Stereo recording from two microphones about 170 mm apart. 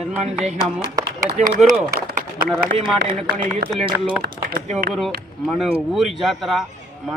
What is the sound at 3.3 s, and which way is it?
Speech, 50° right (ahead or behind).